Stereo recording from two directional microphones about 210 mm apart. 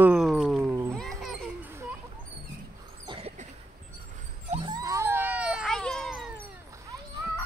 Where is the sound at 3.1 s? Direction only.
30° right (ahead or behind).